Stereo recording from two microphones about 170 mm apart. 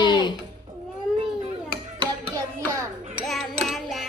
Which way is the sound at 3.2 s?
Centre (ahead or behind).